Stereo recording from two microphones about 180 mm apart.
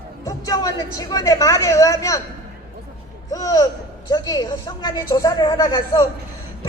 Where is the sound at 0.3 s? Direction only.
20° left (ahead or behind).